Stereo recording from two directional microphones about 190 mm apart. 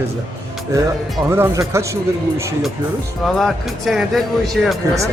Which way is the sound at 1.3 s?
15° right (ahead or behind).